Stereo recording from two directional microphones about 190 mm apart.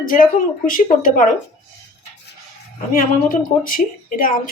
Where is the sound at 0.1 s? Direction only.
45° left (ahead or behind).